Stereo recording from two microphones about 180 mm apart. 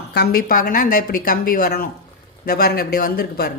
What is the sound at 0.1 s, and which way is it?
A woman's voice, 60° left (ahead or behind).